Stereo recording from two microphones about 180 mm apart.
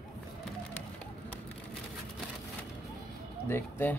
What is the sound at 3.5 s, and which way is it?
Speech, 10° left (ahead or behind).